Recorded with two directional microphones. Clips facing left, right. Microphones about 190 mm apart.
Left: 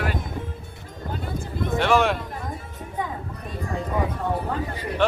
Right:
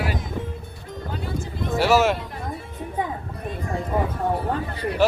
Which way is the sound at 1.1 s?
50° left (ahead or behind).